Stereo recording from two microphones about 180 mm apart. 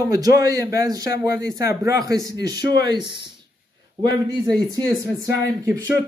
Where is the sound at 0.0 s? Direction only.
20° right (ahead or behind).